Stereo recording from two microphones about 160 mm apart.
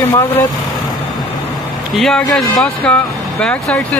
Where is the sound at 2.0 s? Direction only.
5° left (ahead or behind).